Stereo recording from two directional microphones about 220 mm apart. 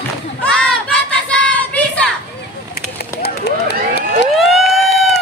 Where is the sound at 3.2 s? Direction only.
50° left (ahead or behind).